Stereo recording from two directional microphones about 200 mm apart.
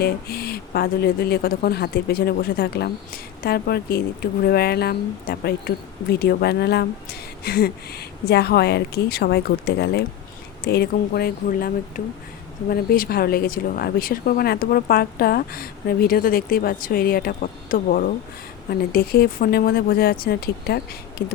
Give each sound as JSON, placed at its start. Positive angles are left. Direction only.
{"t": 0.0, "sound": "speech", "side_deg": 50}